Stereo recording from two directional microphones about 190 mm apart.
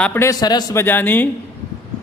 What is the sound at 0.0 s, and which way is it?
A man's voice, 10° left (ahead or behind).